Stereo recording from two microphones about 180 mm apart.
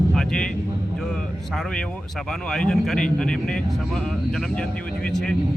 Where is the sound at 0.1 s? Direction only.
5° left (ahead or behind).